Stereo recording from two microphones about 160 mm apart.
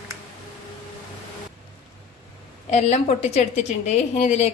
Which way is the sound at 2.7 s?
45° left (ahead or behind).